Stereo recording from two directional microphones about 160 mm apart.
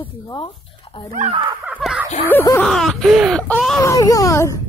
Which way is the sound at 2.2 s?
10° left (ahead or behind).